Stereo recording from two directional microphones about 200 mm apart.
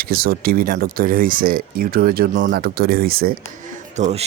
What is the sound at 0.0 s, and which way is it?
Speech, 50° right (ahead or behind).